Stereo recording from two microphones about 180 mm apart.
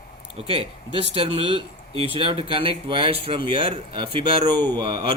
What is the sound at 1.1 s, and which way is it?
Speech, 30° right (ahead or behind).